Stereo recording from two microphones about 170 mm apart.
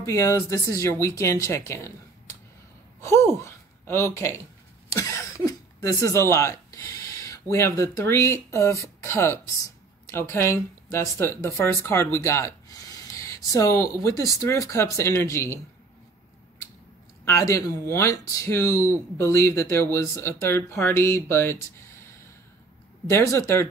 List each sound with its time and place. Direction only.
0.0 s speech: 15° left (ahead or behind)
3.0 s speech: 15° left (ahead or behind)
17.2 s speech: 15° left (ahead or behind)
23.0 s speech: 15° left (ahead or behind)